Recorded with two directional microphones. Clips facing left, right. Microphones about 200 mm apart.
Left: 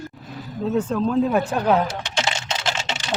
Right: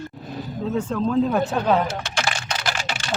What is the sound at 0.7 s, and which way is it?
Speech, 5° left (ahead or behind).